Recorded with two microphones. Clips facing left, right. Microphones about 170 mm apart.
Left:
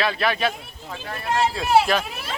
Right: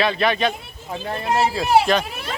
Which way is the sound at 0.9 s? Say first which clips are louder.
Right 6 dB; 25° right (ahead or behind).